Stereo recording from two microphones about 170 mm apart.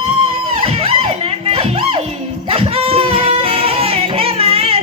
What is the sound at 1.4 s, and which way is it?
Music, 35° right (ahead or behind).